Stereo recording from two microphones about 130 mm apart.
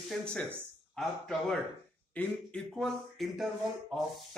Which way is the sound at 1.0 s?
5° left (ahead or behind).